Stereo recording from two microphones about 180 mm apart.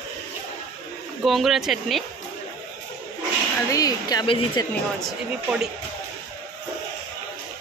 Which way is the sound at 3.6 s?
20° left (ahead or behind).